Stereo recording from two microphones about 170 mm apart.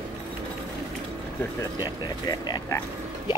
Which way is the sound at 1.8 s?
25° left (ahead or behind).